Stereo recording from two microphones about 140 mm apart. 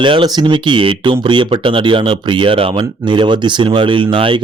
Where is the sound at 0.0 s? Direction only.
35° right (ahead or behind).